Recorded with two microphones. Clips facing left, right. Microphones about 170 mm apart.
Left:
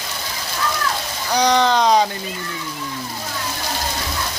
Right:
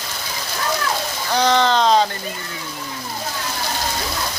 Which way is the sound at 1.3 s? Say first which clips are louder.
Left 1 dB; 15° left (ahead or behind).